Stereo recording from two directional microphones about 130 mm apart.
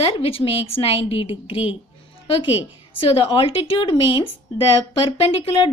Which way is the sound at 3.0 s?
45° left (ahead or behind).